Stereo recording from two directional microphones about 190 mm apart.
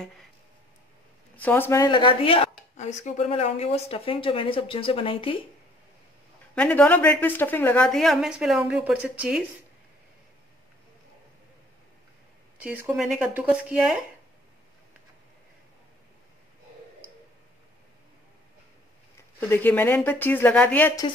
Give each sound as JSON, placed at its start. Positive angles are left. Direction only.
{"t": 1.3, "sound": "speech", "side_deg": 10}
{"t": 6.5, "sound": "a woman's voice", "side_deg": 5}
{"t": 12.6, "sound": "a woman's voice", "side_deg": -5}
{"t": 19.4, "sound": "a woman's voice", "side_deg": 10}